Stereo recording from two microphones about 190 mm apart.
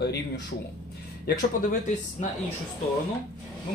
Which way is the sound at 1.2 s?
45° left (ahead or behind).